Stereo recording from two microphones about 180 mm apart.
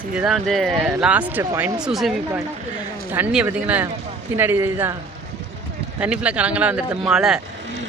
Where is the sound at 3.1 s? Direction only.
5° right (ahead or behind).